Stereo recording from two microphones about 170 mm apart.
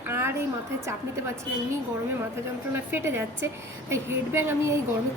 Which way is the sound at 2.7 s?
15° right (ahead or behind).